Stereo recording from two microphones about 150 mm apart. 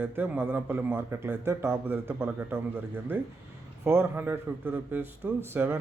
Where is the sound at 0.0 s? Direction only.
10° right (ahead or behind).